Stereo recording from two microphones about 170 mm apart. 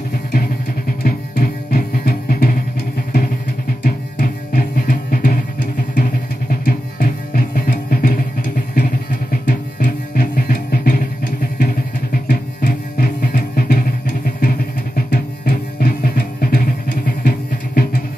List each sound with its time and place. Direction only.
1.0 s music: 60° left (ahead or behind)
3.8 s music: 60° left (ahead or behind)
6.5 s music: 60° left (ahead or behind)